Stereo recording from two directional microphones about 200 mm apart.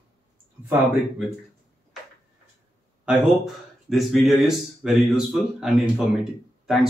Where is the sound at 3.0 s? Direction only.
Centre (ahead or behind).